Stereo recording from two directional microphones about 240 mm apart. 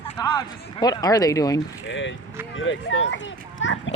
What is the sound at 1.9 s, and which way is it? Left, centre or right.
Speech, left.